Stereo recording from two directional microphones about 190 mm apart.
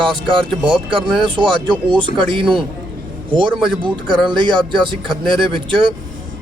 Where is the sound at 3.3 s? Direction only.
25° right (ahead or behind).